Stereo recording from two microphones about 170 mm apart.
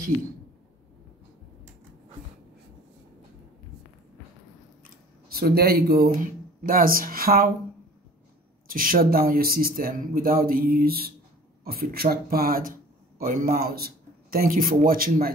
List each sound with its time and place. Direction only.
5.3 s speech: 65° right (ahead or behind)
8.6 s speech: 55° right (ahead or behind)